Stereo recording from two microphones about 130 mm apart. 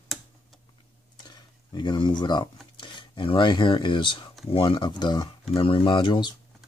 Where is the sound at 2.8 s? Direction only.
40° left (ahead or behind).